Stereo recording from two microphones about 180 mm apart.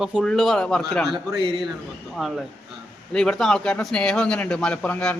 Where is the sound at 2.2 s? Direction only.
Centre (ahead or behind).